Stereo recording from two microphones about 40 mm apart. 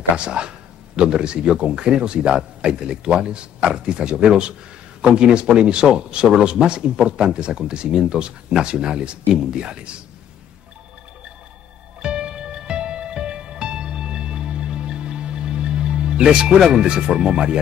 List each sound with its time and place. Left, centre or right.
0.1 s speech: right
12.0 s music: right
16.7 s speech: right